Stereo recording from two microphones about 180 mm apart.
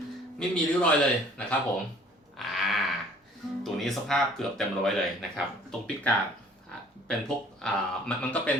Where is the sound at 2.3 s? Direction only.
Centre (ahead or behind).